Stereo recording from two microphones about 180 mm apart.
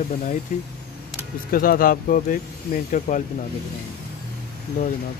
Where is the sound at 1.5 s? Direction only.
55° left (ahead or behind).